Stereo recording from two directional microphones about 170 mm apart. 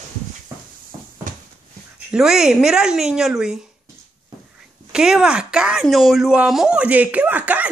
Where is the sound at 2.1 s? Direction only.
5° right (ahead or behind).